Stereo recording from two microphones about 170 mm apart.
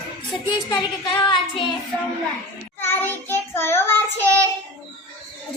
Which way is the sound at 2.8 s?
10° left (ahead or behind).